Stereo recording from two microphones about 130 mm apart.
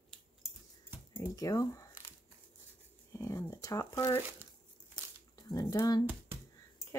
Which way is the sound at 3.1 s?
25° left (ahead or behind).